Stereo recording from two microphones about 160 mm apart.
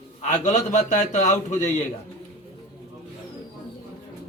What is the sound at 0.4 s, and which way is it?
A man's voice, 45° left (ahead or behind).